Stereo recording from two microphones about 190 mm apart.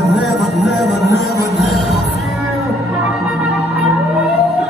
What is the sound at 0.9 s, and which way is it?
Music, 65° left (ahead or behind).